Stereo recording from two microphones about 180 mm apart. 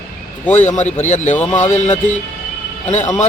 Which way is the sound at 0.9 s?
40° left (ahead or behind).